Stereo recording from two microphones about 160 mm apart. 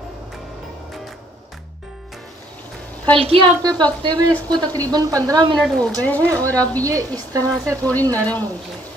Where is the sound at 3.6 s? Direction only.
25° right (ahead or behind).